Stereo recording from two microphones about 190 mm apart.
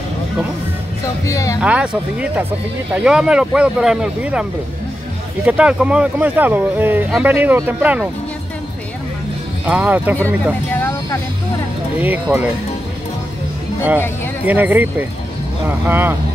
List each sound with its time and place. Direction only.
1.2 s a sound: 15° left (ahead or behind)
1.6 s speech: 5° right (ahead or behind)
9.7 s speech: 10° right (ahead or behind)
10.1 s speech: 10° left (ahead or behind)
12.0 s speech: 10° right (ahead or behind)
14.4 s speech: 10° right (ahead or behind)